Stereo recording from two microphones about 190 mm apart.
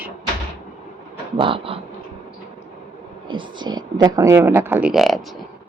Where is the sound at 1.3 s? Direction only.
30° right (ahead or behind).